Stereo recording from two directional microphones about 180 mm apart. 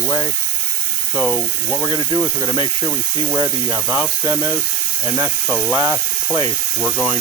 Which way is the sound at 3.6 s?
10° right (ahead or behind).